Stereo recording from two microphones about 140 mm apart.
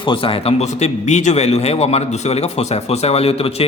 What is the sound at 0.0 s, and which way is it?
A man's voice, 40° left (ahead or behind).